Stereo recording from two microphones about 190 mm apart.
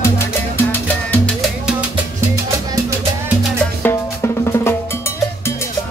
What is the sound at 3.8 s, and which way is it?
Drum, 15° left (ahead or behind).